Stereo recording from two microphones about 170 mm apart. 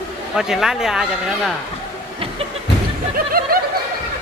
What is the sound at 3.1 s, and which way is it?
Snicker, 60° right (ahead or behind).